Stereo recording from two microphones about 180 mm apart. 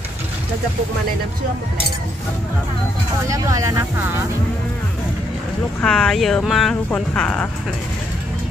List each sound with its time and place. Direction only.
3.3 s speech: 20° right (ahead or behind)
5.8 s speech: 5° left (ahead or behind)